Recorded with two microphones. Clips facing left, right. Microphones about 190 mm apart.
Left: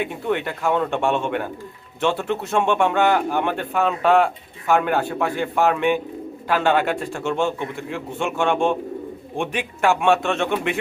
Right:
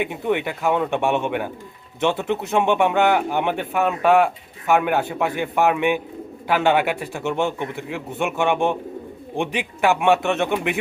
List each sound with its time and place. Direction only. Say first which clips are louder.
0.0 s speech: right 1 dB; 15° right (ahead or behind)